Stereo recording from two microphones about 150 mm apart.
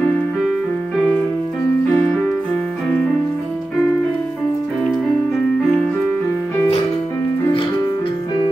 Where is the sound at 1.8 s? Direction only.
5° left (ahead or behind).